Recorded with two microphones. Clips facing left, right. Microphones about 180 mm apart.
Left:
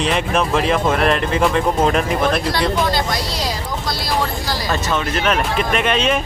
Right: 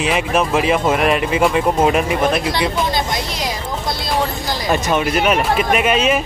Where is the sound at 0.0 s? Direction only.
5° right (ahead or behind).